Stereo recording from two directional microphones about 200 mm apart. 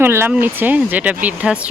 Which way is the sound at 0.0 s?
10° right (ahead or behind).